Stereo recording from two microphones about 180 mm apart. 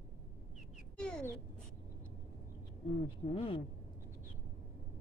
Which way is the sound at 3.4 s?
30° left (ahead or behind).